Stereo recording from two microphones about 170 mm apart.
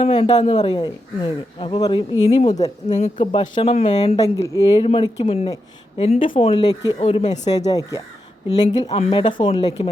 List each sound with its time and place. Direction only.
0.0 s a woman's voice: 30° left (ahead or behind)
4.2 s a woman's voice: 20° left (ahead or behind)
4.8 s a woman's voice: 30° left (ahead or behind)
7.0 s speech: 40° left (ahead or behind)
7.7 s a woman's voice: 20° left (ahead or behind)
8.9 s a woman's voice: 35° left (ahead or behind)